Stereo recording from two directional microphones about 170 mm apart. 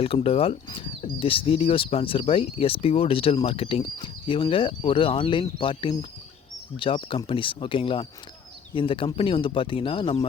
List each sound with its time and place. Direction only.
0.0 s speech: 35° left (ahead or behind)